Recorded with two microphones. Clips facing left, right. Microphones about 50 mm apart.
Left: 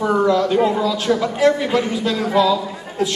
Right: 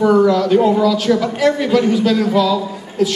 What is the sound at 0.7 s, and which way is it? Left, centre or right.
A man's voice, left.